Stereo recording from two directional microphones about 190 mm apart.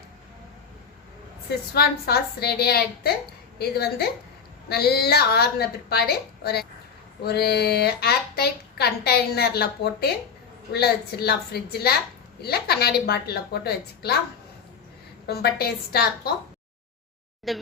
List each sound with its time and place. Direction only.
1.5 s speech: 55° left (ahead or behind)
15.3 s speech: 55° left (ahead or behind)
17.5 s speech: centre (ahead or behind)